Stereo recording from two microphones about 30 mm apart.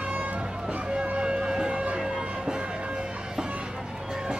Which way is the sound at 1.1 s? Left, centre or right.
Right.